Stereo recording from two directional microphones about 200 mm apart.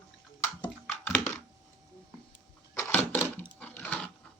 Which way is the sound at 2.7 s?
15° left (ahead or behind).